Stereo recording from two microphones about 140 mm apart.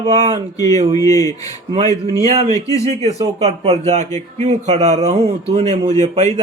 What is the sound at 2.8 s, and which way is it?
Speech, 50° right (ahead or behind).